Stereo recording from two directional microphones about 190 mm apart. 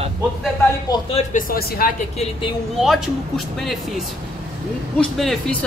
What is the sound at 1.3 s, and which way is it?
Speech, 50° left (ahead or behind).